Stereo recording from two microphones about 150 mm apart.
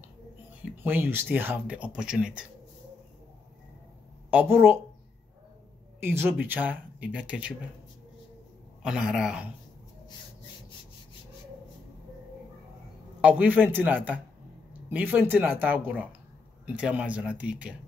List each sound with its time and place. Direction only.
0.8 s speech: 15° right (ahead or behind)
4.3 s speech: 10° right (ahead or behind)
5.9 s speech: 15° right (ahead or behind)
8.8 s speech: 5° right (ahead or behind)
13.2 s speech: 10° right (ahead or behind)